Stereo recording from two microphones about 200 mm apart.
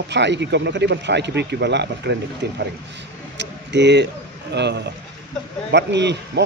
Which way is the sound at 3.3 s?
60° right (ahead or behind).